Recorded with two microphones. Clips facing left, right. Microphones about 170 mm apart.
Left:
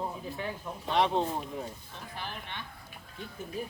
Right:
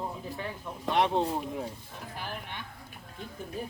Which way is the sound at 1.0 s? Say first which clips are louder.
Right 1 dB; 15° right (ahead or behind).